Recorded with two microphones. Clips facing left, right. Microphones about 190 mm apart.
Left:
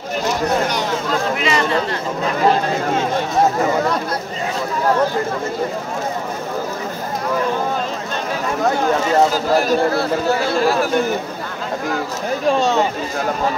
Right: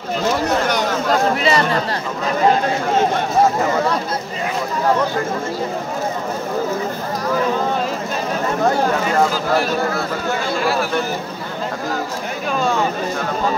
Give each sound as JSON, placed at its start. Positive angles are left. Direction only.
{"t": 1.3, "sound": "speech", "side_deg": -40}